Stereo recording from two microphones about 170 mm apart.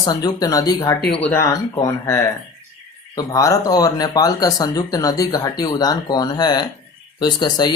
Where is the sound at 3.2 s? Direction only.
20° left (ahead or behind).